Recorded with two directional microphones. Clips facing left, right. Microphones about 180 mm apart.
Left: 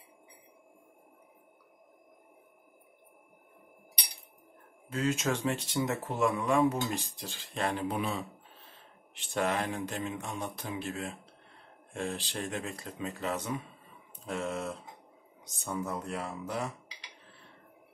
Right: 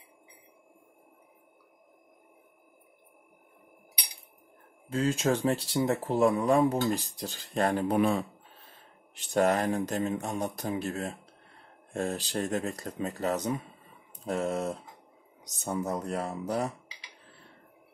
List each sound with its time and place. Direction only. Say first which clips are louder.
4.8 s speech: right 3 dB; 30° right (ahead or behind)